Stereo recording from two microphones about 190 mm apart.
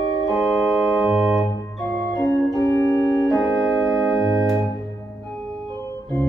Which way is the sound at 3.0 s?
Centre (ahead or behind).